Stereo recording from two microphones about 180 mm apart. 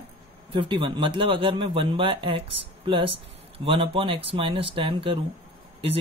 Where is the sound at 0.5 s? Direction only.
30° right (ahead or behind).